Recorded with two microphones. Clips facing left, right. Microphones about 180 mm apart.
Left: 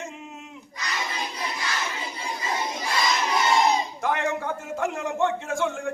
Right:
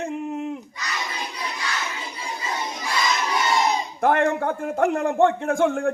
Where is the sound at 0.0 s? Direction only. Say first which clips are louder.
Right 11 dB; 60° right (ahead or behind).